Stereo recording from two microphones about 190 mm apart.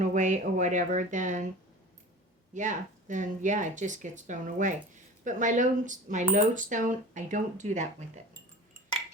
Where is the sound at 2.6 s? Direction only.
40° right (ahead or behind).